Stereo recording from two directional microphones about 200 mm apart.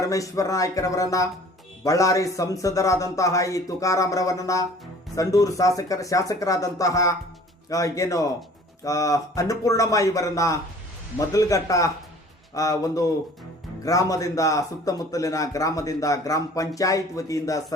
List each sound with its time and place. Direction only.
0.0 s a man's voice: 15° left (ahead or behind)